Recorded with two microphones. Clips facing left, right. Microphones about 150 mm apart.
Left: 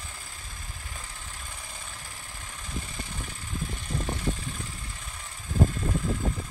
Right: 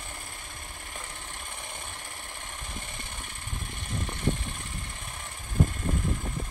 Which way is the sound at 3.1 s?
45° left (ahead or behind).